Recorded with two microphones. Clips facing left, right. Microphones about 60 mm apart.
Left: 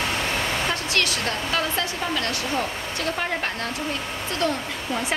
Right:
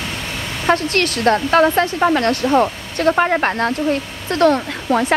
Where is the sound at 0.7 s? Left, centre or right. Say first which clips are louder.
Right 8 dB; right.